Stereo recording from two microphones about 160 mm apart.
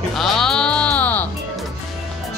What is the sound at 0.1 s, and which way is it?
Music, centre (ahead or behind).